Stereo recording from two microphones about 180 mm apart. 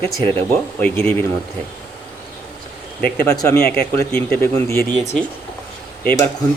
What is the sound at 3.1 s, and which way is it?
Speech, 15° left (ahead or behind).